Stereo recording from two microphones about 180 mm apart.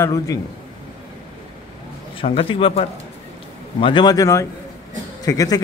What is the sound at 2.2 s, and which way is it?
Speech, 30° left (ahead or behind).